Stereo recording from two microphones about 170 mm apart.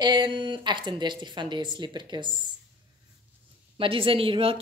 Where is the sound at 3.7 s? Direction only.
30° right (ahead or behind).